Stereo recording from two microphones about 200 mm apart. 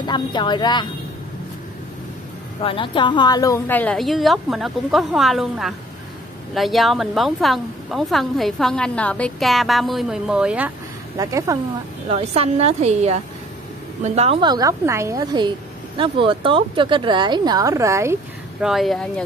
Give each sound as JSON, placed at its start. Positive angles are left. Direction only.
{"t": 0.0, "sound": "speech", "side_deg": 20}
{"t": 2.6, "sound": "a woman's voice", "side_deg": 25}
{"t": 11.1, "sound": "speech", "side_deg": -15}
{"t": 12.1, "sound": "a woman's voice", "side_deg": -30}
{"t": 18.6, "sound": "a woman's voice", "side_deg": 0}